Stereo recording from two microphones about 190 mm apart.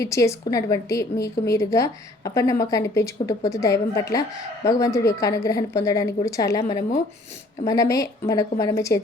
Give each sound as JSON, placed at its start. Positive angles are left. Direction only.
{"t": 0.0, "sound": "a woman's voice", "side_deg": 15}